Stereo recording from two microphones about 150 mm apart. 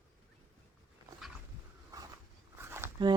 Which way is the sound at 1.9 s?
20° right (ahead or behind).